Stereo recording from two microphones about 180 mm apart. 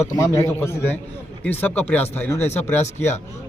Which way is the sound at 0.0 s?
15° left (ahead or behind).